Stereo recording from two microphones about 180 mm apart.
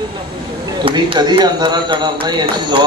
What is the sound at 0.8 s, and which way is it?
Speech, 25° right (ahead or behind).